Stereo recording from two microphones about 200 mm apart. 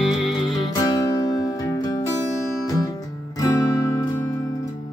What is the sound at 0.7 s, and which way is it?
Music, 20° left (ahead or behind).